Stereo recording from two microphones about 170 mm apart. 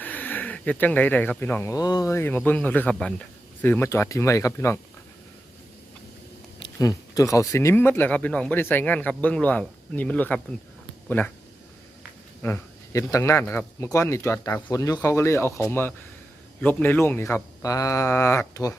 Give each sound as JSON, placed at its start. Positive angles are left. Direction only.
{"t": 0.0, "sound": "speech", "side_deg": 10}
{"t": 6.7, "sound": "speech", "side_deg": 20}
{"t": 12.4, "sound": "speech", "side_deg": 15}